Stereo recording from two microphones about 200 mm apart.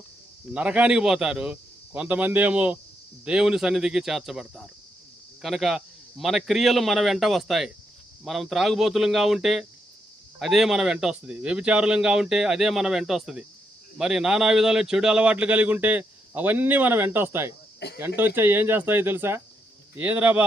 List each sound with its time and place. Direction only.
0.5 s a man's voice: 5° right (ahead or behind)
17.7 s speech: 55° left (ahead or behind)
18.3 s a man's voice: 10° right (ahead or behind)